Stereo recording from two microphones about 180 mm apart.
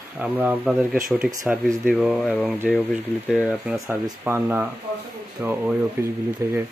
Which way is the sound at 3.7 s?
15° right (ahead or behind).